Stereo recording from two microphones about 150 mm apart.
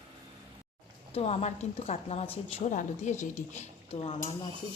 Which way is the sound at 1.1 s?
45° left (ahead or behind).